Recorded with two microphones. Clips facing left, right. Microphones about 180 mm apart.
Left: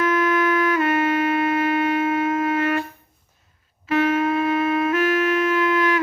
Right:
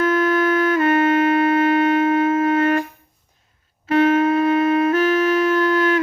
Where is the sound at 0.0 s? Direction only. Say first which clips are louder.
Right 2 dB; 30° right (ahead or behind).